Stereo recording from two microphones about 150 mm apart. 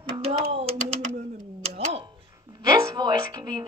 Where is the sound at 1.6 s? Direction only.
45° right (ahead or behind).